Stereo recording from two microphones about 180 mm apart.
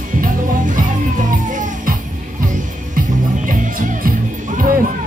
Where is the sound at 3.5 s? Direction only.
50° right (ahead or behind).